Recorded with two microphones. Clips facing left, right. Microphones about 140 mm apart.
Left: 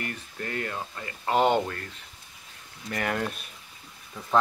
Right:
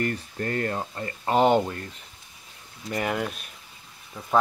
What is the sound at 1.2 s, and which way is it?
Speech, 20° right (ahead or behind).